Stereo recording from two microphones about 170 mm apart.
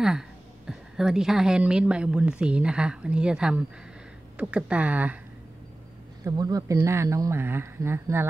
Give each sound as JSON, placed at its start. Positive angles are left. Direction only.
{"t": 0.7, "sound": "a woman's voice", "side_deg": -5}
{"t": 6.2, "sound": "speech", "side_deg": -20}